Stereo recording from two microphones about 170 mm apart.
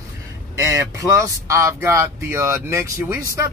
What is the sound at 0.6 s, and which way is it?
Speech, 20° right (ahead or behind).